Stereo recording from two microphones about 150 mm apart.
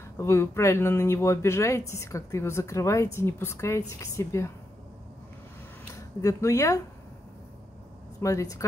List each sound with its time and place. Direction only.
0.2 s speech: 20° left (ahead or behind)
5.9 s speech: 20° left (ahead or behind)
8.2 s speech: 20° left (ahead or behind)